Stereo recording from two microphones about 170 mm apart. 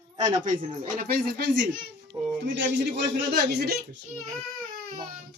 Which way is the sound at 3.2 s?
75° right (ahead or behind).